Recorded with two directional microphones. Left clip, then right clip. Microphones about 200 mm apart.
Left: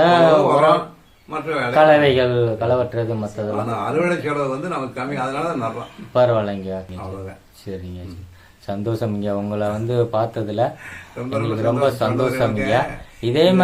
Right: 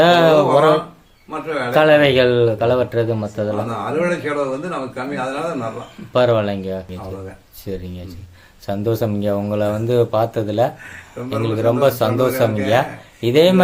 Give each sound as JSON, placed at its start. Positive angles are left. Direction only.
{"t": 0.0, "sound": "a sound", "side_deg": -35}
{"t": 1.7, "sound": "speech", "side_deg": -35}
{"t": 3.9, "sound": "a man's voice", "side_deg": 10}
{"t": 6.1, "sound": "speech", "side_deg": -35}